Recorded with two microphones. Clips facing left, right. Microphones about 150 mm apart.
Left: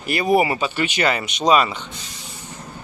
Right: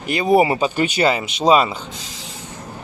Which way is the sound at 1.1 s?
25° right (ahead or behind).